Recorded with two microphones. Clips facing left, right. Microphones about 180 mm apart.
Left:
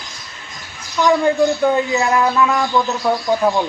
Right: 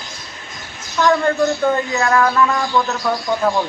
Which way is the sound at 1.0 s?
15° left (ahead or behind).